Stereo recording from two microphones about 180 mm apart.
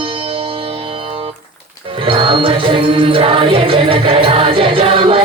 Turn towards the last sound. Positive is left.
turn(degrees=-30)  # may be behind; listen again after turning